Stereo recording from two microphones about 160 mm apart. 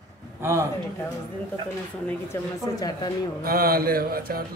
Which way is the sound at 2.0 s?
15° left (ahead or behind).